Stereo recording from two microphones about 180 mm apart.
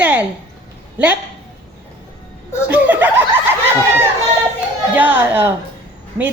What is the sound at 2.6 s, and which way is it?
Speech, 10° right (ahead or behind).